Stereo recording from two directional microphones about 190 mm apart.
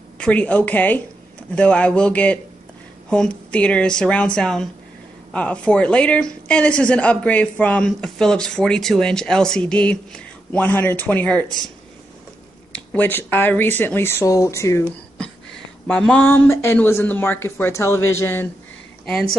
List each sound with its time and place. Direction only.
0.2 s a woman's voice: 10° left (ahead or behind)
12.7 s a woman's voice: 10° left (ahead or behind)